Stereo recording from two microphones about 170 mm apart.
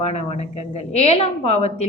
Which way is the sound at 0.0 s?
40° left (ahead or behind).